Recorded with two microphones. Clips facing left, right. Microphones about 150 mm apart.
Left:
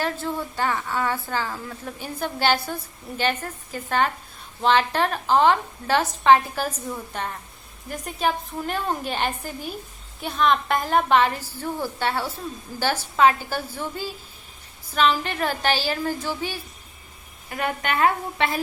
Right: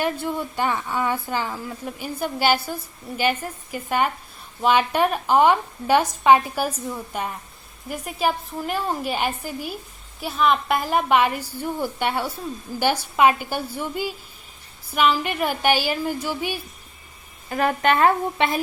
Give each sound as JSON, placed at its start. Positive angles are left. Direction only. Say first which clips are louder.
{"t": 0.0, "sound": "a woman's voice", "louder": "right 2 dB", "side_deg": -15}
{"t": 17.5, "sound": "a woman's voice", "louder": "right 6 dB", "side_deg": -35}
{"t": 18.3, "sound": "speech", "louder": "right 2 dB", "side_deg": -20}